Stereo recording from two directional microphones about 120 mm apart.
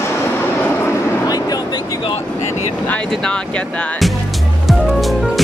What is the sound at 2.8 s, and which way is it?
Speech, 10° left (ahead or behind).